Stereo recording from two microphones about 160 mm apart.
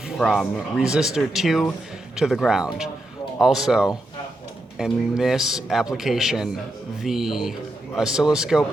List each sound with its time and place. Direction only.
0.2 s a man's voice: centre (ahead or behind)